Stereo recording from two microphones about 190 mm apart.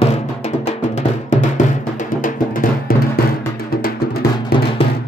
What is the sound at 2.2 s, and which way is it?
Music, 45° left (ahead or behind).